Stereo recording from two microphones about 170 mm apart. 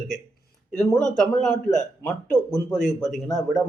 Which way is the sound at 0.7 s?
5° left (ahead or behind).